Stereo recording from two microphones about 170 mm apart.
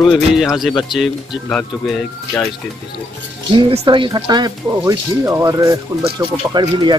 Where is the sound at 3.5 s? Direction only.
25° right (ahead or behind).